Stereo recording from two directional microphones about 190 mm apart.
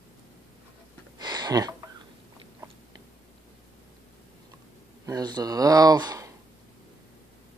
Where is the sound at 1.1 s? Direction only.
20° right (ahead or behind).